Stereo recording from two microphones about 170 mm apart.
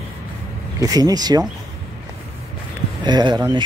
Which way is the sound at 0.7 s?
20° right (ahead or behind).